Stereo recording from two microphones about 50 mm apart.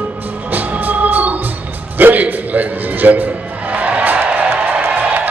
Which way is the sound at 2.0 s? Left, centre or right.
Right.